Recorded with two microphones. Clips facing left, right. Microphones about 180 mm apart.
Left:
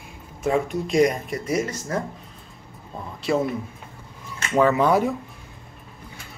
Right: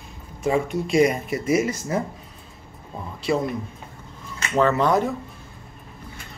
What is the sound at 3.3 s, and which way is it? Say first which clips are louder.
Speech: left 1 dB; centre (ahead or behind).